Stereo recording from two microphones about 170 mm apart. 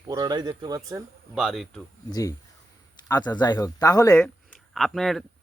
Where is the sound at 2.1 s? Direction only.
20° left (ahead or behind).